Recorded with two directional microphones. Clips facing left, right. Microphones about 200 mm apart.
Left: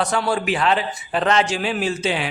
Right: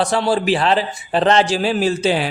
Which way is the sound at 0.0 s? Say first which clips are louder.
Right 4 dB; 30° right (ahead or behind).